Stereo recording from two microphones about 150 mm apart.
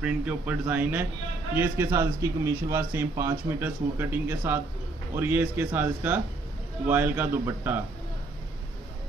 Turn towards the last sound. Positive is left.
turn(degrees=-15)  # may be behind; listen again after turning